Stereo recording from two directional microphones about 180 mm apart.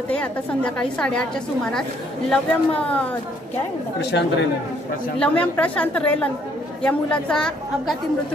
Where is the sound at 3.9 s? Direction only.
75° left (ahead or behind).